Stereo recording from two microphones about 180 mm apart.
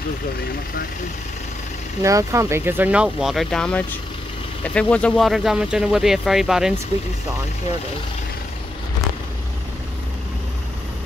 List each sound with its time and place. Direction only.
2.0 s speech: 15° right (ahead or behind)